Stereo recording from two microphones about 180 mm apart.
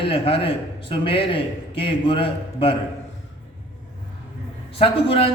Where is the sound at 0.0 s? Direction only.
30° left (ahead or behind).